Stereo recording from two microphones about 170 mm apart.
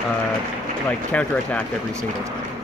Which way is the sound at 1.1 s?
10° left (ahead or behind).